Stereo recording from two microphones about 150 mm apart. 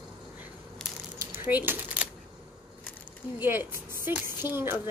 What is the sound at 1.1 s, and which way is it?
Coin, 15° right (ahead or behind).